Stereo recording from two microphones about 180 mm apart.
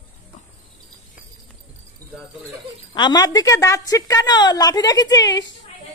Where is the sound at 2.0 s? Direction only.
20° right (ahead or behind).